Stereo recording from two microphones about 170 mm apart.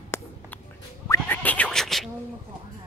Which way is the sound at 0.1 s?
15° left (ahead or behind).